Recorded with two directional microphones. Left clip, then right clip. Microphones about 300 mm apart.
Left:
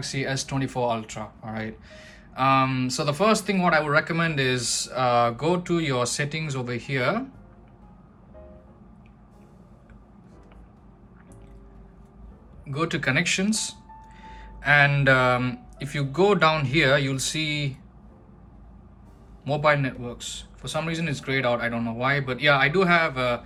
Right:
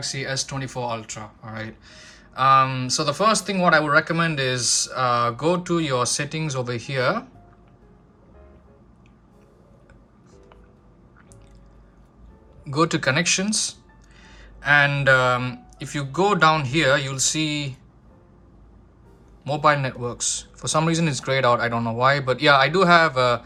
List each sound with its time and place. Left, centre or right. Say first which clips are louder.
0.0 s speech: right 2 dB; centre
12.6 s speech: right 5 dB; centre
19.5 s speech: right 2 dB; centre